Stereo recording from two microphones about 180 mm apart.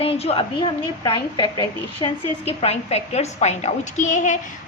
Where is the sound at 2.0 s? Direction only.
35° left (ahead or behind).